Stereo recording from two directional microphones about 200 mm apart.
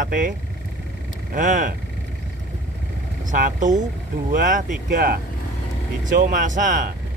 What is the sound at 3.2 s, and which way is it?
Speech, 40° right (ahead or behind).